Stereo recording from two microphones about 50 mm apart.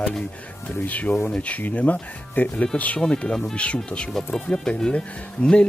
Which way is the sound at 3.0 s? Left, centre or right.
Centre.